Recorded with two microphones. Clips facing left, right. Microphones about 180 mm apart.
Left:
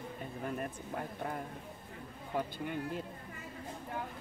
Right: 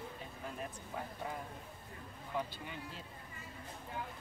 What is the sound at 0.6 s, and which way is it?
Speech, 55° left (ahead or behind).